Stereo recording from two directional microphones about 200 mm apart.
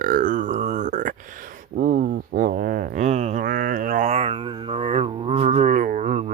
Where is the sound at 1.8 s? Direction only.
50° right (ahead or behind).